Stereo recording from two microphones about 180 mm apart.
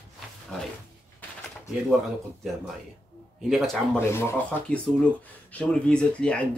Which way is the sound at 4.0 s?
15° left (ahead or behind).